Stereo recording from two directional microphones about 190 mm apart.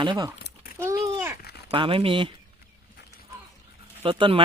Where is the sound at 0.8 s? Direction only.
15° right (ahead or behind).